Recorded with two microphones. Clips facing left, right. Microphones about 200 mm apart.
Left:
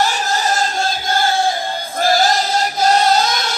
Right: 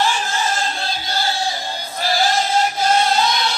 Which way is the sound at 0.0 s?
40° left (ahead or behind).